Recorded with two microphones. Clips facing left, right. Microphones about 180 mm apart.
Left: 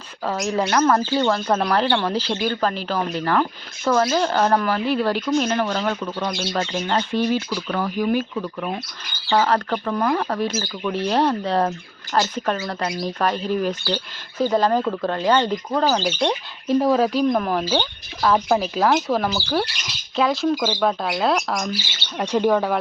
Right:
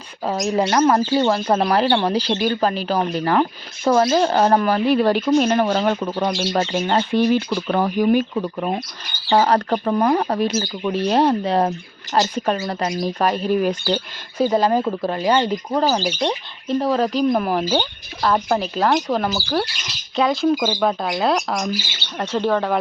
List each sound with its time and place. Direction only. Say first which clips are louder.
0.3 s speech: right 2 dB; 20° right (ahead or behind)
7.5 s speech: right 4 dB; 30° right (ahead or behind); by 16.3 s 10° right (ahead or behind)
16.6 s speech: left 2 dB; 10° left (ahead or behind)
22.2 s speech: left 1 dB; 15° left (ahead or behind)